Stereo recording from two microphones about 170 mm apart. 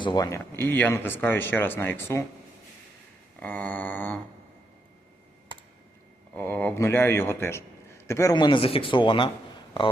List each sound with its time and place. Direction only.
0.0 s a man's voice: 25° left (ahead or behind)
3.4 s a man's voice: 10° left (ahead or behind)
6.3 s a man's voice: 10° left (ahead or behind); by 9.3 s 30° left (ahead or behind)